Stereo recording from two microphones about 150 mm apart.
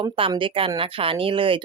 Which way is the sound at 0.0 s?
35° right (ahead or behind).